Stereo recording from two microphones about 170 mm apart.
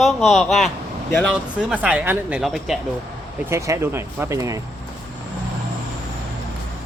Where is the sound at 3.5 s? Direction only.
15° right (ahead or behind).